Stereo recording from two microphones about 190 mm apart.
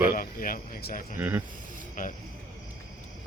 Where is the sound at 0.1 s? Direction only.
50° left (ahead or behind).